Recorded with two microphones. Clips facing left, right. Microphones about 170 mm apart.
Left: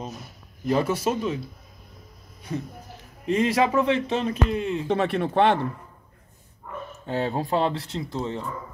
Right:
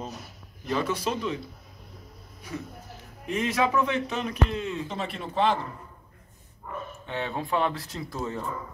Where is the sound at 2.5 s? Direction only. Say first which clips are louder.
Left 5 dB; 35° left (ahead or behind).